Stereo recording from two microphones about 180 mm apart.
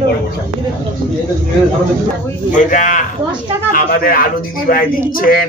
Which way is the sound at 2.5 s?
45° left (ahead or behind).